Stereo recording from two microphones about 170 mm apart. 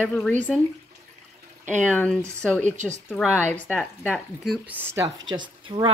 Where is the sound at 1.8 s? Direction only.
10° left (ahead or behind).